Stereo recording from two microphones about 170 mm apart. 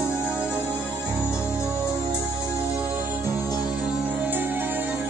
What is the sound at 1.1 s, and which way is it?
Music, 5° right (ahead or behind).